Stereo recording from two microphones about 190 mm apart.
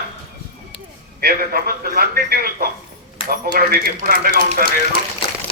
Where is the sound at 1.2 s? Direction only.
50° right (ahead or behind).